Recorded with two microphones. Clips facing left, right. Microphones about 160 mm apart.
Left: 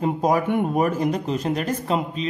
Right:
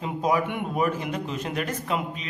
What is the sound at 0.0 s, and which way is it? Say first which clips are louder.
A woman's voice: left 4 dB; 45° left (ahead or behind).